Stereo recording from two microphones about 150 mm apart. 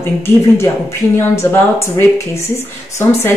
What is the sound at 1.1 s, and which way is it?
A woman's voice, 20° left (ahead or behind).